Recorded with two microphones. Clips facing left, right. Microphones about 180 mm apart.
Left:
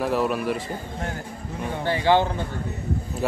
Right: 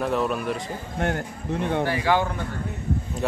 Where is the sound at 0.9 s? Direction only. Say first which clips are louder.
Right 5 dB; 65° right (ahead or behind).